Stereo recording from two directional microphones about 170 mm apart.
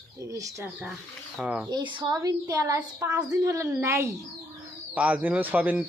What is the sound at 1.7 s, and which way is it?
A woman's voice, 25° right (ahead or behind).